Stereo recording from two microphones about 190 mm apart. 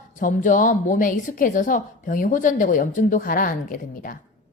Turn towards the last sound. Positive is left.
turn(degrees=45)  # may be behind; listen again after turning